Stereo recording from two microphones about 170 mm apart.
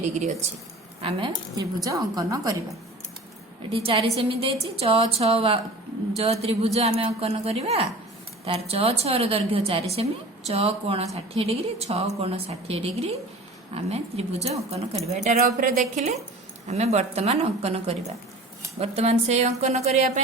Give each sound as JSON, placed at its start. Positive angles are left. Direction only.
{"t": 0.0, "sound": "speech", "side_deg": -45}
{"t": 1.0, "sound": "a woman's voice", "side_deg": -25}
{"t": 3.7, "sound": "a woman's voice", "side_deg": -35}